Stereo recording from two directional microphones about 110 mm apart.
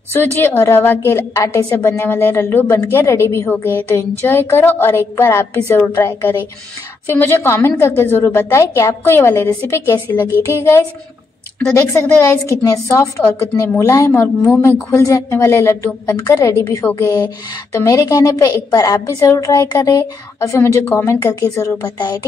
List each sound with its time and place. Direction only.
0.1 s a woman's voice: 20° left (ahead or behind)
11.7 s a woman's voice: 25° left (ahead or behind)
21.9 s a woman's voice: 40° left (ahead or behind)